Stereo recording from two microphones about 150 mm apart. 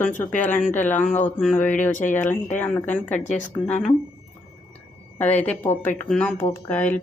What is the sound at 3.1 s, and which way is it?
Speech, 50° left (ahead or behind).